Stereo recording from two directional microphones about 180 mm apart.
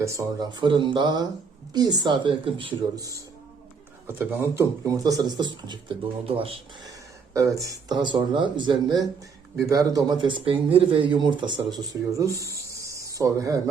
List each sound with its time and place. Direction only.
0.0 s speech: 15° right (ahead or behind)
7.3 s speech: 20° right (ahead or behind)